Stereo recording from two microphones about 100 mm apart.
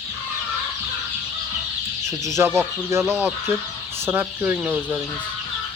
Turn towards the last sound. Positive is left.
turn(degrees=-15)  # may be behind; listen again after turning